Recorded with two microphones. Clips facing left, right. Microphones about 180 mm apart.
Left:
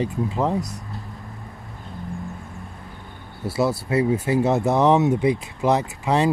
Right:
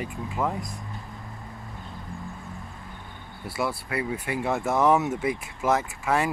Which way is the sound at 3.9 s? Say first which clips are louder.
Left 9 dB; 25° left (ahead or behind).